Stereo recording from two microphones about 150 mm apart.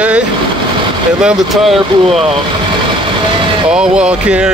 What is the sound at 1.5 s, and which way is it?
Speech, centre (ahead or behind).